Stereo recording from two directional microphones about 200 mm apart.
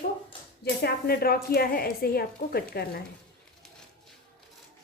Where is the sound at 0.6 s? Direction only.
50° left (ahead or behind).